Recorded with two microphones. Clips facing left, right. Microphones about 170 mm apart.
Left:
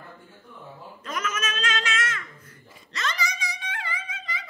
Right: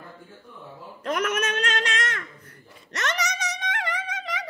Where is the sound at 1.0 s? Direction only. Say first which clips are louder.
Right 6 dB; 60° right (ahead or behind).